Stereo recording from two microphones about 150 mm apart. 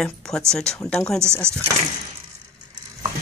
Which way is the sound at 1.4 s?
15° right (ahead or behind).